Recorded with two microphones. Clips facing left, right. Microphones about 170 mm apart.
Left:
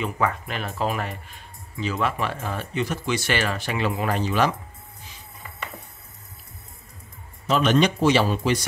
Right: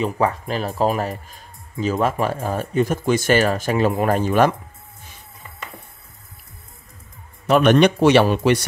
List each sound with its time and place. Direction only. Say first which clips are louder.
0.0 s speech: right 5 dB; 35° right (ahead or behind); by 4.6 s 50° right (ahead or behind)
7.4 s a man's voice: right 6 dB; 60° right (ahead or behind)